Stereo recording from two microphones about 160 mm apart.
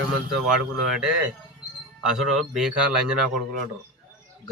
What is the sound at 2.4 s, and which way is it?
Speech, 5° right (ahead or behind).